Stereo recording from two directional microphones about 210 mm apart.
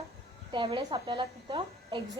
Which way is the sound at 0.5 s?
20° right (ahead or behind).